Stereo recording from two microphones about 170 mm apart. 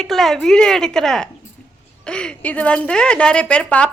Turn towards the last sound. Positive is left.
turn(degrees=5)  # may be behind; listen again after turning